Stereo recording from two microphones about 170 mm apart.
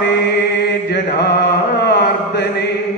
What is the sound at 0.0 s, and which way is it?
Chant, 80° left.